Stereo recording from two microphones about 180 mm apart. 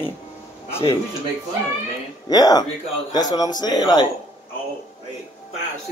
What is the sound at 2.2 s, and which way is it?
A man's voice, 20° left (ahead or behind).